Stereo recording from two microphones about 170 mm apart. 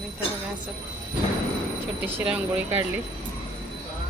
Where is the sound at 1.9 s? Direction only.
10° right (ahead or behind).